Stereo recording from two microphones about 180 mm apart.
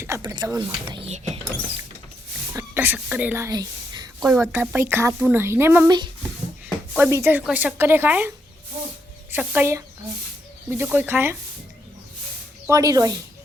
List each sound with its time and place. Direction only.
0.0 s speech: 15° right (ahead or behind)
2.6 s whispering: 10° right (ahead or behind)
4.3 s speech: 10° right (ahead or behind)
6.9 s speech: 10° right (ahead or behind)
9.3 s speech: 10° right (ahead or behind)
10.8 s speech: 10° right (ahead or behind)
12.6 s speech: 20° right (ahead or behind)